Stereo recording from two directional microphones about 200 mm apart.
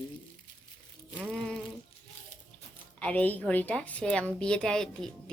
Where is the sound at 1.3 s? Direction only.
Centre (ahead or behind).